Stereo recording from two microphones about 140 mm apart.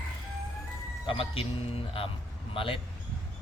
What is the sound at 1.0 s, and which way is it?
A man's voice, 40° left (ahead or behind).